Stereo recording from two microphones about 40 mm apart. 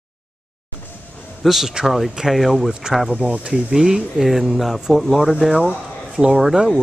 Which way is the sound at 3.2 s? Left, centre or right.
Right.